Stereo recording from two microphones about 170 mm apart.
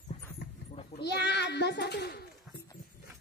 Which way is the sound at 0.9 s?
75° left (ahead or behind).